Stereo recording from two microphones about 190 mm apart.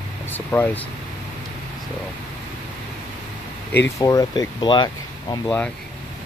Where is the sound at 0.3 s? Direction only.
10° left (ahead or behind).